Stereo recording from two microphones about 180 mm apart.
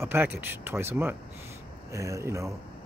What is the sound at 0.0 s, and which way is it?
Speech, 10° right (ahead or behind).